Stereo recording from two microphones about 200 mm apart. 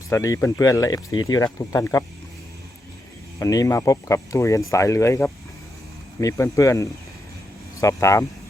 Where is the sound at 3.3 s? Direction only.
15° left (ahead or behind).